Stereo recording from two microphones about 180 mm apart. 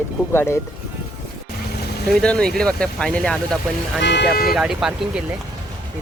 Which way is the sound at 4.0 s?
70° left (ahead or behind).